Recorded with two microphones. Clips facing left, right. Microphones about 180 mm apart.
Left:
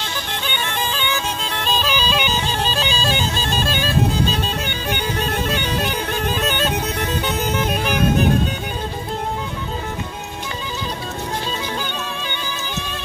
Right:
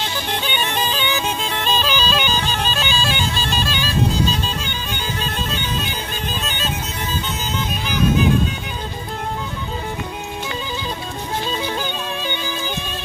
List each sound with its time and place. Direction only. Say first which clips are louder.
0.5 s bagpipes: even; 20° right (ahead or behind)
1.5 s bagpipes: left 1 dB; centre (ahead or behind); by 8.3 s 55° left (ahead or behind)